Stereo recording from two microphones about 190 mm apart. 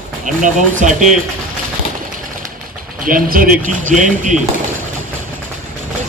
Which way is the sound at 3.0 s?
50° right (ahead or behind).